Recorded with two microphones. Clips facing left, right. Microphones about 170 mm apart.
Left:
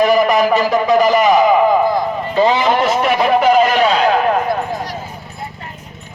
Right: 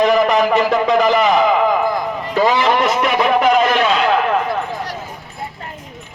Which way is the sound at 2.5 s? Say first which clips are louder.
Left 1 dB; 30° left (ahead or behind).